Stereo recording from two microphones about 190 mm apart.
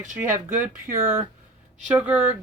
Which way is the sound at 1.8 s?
5° right (ahead or behind).